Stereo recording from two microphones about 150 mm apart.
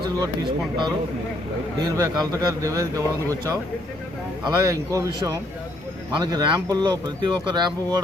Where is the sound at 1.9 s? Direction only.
20° right (ahead or behind).